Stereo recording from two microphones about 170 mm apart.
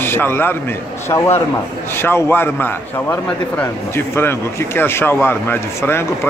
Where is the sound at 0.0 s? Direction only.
15° left (ahead or behind).